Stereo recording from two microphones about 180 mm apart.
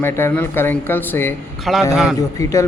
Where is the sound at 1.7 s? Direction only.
Centre (ahead or behind).